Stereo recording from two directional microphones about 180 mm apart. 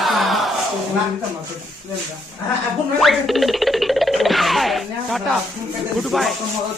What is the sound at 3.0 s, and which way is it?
Music, centre (ahead or behind).